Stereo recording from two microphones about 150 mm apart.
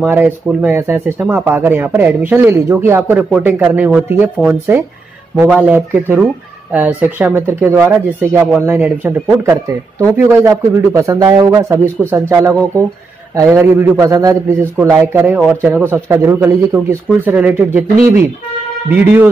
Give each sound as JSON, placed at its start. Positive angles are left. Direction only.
{"t": 0.0, "sound": "speech", "side_deg": -10}